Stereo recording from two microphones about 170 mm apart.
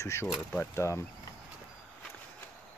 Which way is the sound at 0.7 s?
15° left (ahead or behind).